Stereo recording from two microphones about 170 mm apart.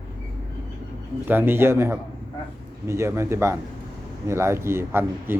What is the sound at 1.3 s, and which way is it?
Speech, 10° right (ahead or behind).